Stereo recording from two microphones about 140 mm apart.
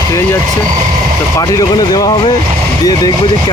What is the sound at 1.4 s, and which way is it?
Speech, 25° left (ahead or behind).